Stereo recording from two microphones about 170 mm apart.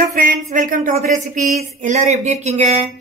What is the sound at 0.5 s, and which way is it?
A woman's voice, 50° right (ahead or behind).